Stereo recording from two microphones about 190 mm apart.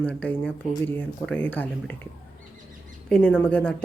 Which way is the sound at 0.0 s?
5° left (ahead or behind).